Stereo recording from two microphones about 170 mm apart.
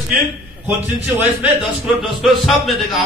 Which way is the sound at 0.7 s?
10° right (ahead or behind).